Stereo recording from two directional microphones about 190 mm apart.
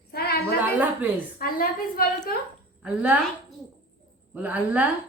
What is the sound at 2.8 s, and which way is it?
A woman's voice, 5° right (ahead or behind).